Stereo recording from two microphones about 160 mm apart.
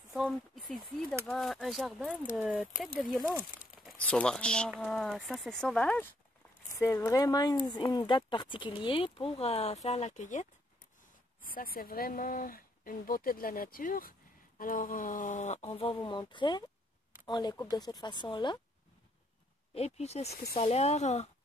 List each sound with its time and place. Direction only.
0.1 s speech: centre (ahead or behind); by 10.5 s 50° left (ahead or behind)
11.4 s speech: 65° left (ahead or behind); by 18.6 s 30° left (ahead or behind)
19.7 s speech: 40° left (ahead or behind)